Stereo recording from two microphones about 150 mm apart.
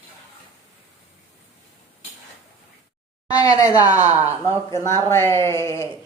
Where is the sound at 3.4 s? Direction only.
25° left (ahead or behind).